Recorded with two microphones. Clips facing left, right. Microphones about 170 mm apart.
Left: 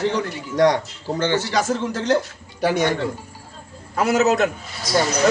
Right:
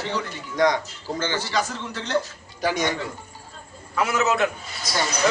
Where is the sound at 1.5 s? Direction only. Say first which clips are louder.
Left 6 dB; 45° left (ahead or behind).